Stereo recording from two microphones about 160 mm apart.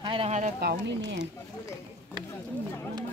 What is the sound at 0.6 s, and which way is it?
Speech, 85° right.